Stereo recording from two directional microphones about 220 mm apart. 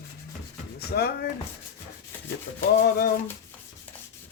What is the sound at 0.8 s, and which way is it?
Speech, 45° left (ahead or behind).